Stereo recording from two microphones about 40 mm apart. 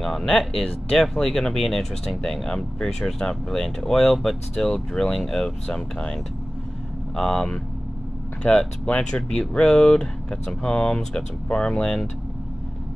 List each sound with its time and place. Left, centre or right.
0.0 s speech: centre
7.2 s speech: centre
8.5 s speech: left
9.1 s speech: centre